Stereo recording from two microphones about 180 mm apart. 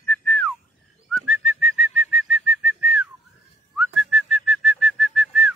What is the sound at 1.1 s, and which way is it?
Whistling, 5° right (ahead or behind).